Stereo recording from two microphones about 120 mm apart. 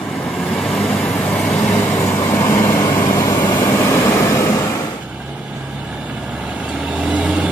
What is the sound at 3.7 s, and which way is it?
Vehicle, 25° left (ahead or behind).